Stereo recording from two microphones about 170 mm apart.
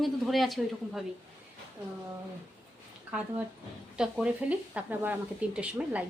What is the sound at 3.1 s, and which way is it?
Speech, 5° right (ahead or behind).